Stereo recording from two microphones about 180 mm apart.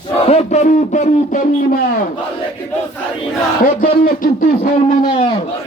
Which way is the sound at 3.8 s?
55° left (ahead or behind).